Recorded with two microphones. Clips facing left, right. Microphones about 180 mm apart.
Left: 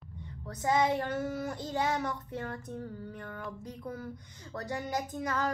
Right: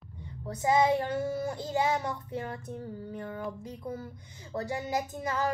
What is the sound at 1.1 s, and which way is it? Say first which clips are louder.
Speech: right 3 dB; 30° right (ahead or behind).